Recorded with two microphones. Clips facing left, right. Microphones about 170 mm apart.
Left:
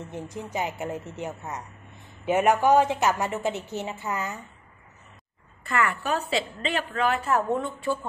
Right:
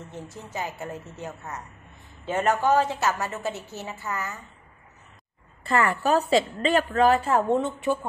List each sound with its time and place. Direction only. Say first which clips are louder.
0.1 s a woman's voice: left 4 dB; 15° left (ahead or behind)
5.7 s a woman's voice: right 4 dB; 35° right (ahead or behind)